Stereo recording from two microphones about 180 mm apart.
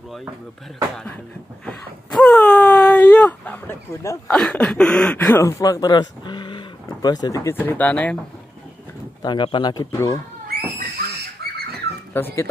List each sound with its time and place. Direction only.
1.7 s speech: centre (ahead or behind)
9.2 s speech: 25° left (ahead or behind)
11.4 s a sound: 60° right (ahead or behind)
12.1 s speech: 10° left (ahead or behind)